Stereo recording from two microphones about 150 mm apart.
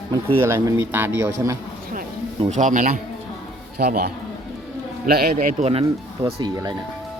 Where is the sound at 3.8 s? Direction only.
90° right.